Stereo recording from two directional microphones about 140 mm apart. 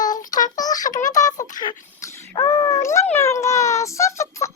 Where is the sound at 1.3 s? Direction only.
65° left (ahead or behind).